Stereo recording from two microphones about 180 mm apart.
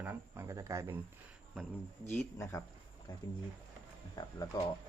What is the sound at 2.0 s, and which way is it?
Speech, 10° left (ahead or behind).